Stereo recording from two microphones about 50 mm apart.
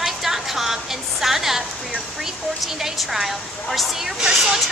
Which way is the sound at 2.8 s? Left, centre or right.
Centre.